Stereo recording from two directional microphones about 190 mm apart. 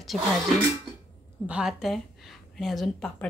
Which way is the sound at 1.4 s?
5° right (ahead or behind).